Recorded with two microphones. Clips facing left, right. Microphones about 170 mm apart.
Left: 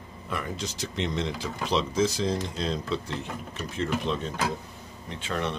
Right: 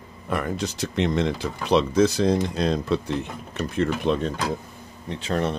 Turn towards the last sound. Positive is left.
turn(degrees=-40)  # may be behind; listen again after turning